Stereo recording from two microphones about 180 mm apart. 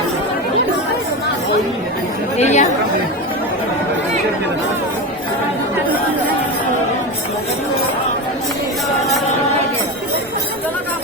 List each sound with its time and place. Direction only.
2.4 s chatter: 40° left (ahead or behind)